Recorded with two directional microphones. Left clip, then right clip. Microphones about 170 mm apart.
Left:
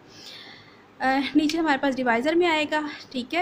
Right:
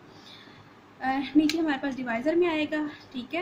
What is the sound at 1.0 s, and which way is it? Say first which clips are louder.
A woman's voice: left 3 dB; 55° left (ahead or behind).